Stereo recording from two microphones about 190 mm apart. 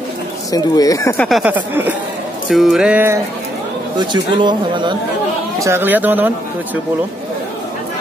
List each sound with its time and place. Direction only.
0.5 s speech: 20° left (ahead or behind)
1.4 s speech: 10° right (ahead or behind)
4.0 s speech: 25° right (ahead or behind)
5.6 s speech: 10° right (ahead or behind)